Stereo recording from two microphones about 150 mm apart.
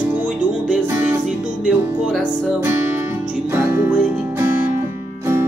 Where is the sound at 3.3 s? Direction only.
15° right (ahead or behind).